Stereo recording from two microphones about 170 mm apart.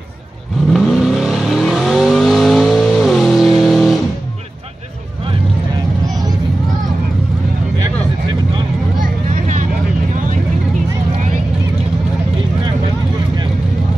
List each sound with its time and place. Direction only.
0.7 s vehicle: centre (ahead or behind)
6.0 s vehicle: 20° right (ahead or behind)
9.0 s vehicle: 50° right (ahead or behind)